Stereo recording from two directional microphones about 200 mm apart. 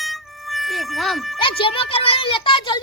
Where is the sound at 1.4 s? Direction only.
25° left (ahead or behind).